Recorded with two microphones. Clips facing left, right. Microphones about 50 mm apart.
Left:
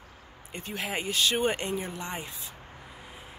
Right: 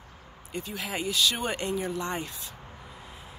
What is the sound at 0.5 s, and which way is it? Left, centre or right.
Speech, left.